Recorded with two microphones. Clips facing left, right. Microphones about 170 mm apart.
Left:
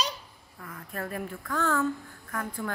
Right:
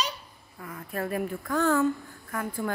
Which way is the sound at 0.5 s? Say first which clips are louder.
Right 4 dB; 10° right (ahead or behind).